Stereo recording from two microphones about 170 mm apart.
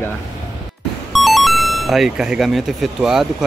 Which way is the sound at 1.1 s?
Centre (ahead or behind).